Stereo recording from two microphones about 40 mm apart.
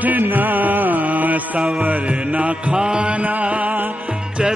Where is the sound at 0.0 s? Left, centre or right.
Right.